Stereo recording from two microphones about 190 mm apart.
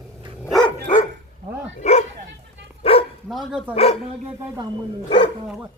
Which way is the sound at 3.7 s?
30° left (ahead or behind).